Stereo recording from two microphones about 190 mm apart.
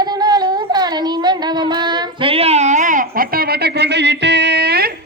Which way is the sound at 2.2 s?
30° right (ahead or behind).